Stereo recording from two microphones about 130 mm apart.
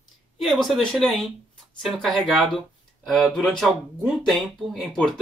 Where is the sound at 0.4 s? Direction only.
Centre (ahead or behind).